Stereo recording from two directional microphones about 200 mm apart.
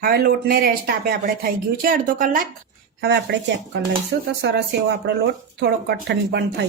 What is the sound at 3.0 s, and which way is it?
A woman's voice, 60° right (ahead or behind).